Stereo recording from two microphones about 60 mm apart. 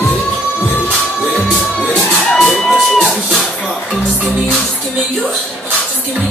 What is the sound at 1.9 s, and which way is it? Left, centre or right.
Music, left.